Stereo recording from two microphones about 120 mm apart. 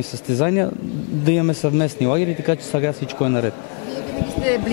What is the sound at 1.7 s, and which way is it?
Speech, 20° left (ahead or behind).